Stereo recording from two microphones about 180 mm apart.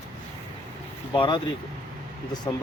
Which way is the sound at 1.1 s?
25° left (ahead or behind).